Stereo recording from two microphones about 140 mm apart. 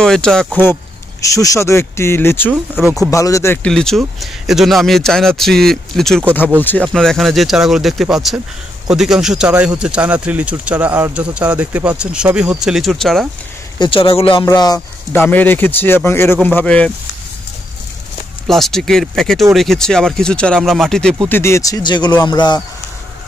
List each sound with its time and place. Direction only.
0.0 s speech: 5° left (ahead or behind)
1.2 s speech: 25° left (ahead or behind)
2.5 s speech: 5° right (ahead or behind)
3.1 s speech: 25° left (ahead or behind)
3.6 s speech: 5° left (ahead or behind)
6.6 s speech: 15° left (ahead or behind)
6.9 s speech: centre (ahead or behind)
13.7 s speech: 40° left (ahead or behind)
14.4 s speech: 30° left (ahead or behind)
15.1 s speech: 15° left (ahead or behind)
18.5 s speech: centre (ahead or behind)
21.3 s speech: 20° left (ahead or behind)